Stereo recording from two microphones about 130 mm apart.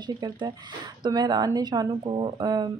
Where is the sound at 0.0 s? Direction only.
35° right (ahead or behind).